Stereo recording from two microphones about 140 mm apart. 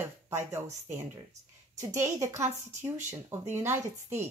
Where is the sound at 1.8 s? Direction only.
20° right (ahead or behind).